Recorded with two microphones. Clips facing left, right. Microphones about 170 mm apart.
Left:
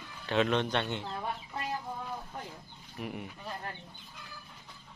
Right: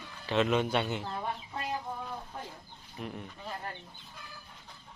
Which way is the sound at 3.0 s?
5° left (ahead or behind).